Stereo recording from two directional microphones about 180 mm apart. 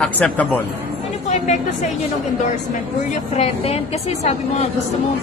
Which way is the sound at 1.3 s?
40° left (ahead or behind).